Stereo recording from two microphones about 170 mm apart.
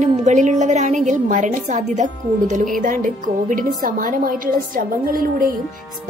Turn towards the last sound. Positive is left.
turn(degrees=-55)  # may be behind; listen again after turning